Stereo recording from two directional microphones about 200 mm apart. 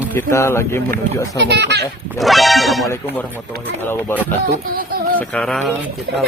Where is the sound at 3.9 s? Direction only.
10° left (ahead or behind).